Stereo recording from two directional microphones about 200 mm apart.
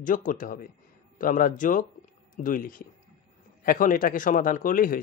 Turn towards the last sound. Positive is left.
turn(degrees=45)  # may be behind; listen again after turning